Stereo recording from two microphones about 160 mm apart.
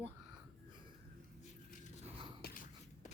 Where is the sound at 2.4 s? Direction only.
60° left (ahead or behind).